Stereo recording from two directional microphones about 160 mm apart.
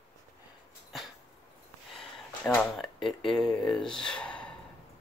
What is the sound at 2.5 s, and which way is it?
Speech, centre (ahead or behind).